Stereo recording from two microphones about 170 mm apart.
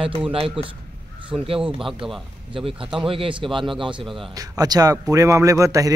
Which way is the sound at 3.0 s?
30° right (ahead or behind).